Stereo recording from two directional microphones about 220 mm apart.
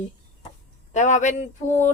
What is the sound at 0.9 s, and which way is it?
Speech, 35° left (ahead or behind).